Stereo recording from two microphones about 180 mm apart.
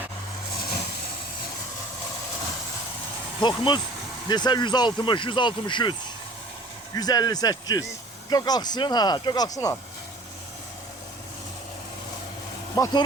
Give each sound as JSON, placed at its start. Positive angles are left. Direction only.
{"t": 3.4, "sound": "speech", "side_deg": 25}
{"t": 12.7, "sound": "speech", "side_deg": 20}